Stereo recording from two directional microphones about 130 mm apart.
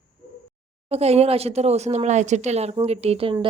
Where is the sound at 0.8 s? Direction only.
50° right (ahead or behind).